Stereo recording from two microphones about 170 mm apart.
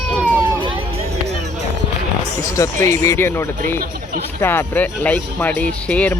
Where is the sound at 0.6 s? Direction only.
35° right (ahead or behind).